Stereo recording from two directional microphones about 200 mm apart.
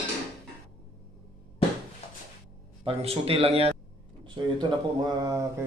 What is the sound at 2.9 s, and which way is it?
Speech, 30° right (ahead or behind).